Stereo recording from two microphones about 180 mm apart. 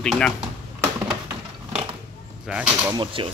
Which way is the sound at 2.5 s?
5° right (ahead or behind).